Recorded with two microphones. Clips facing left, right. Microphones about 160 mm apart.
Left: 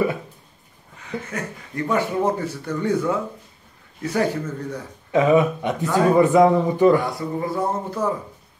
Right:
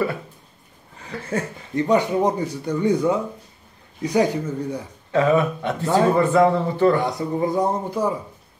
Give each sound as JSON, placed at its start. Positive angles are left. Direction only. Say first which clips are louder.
{"t": 1.3, "sound": "speech", "louder": "right 5 dB", "side_deg": -20}
{"t": 5.1, "sound": "speech", "louder": "left 2 dB", "side_deg": 15}
{"t": 7.0, "sound": "speech", "louder": "right 3 dB", "side_deg": -20}